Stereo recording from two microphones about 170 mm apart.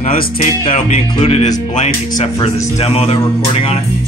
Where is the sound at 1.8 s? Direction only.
40° left (ahead or behind).